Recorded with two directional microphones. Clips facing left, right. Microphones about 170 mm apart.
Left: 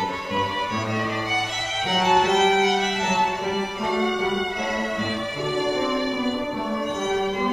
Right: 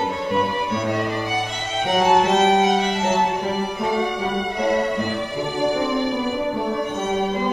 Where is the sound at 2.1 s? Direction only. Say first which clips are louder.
Right 1 dB; 30° right (ahead or behind).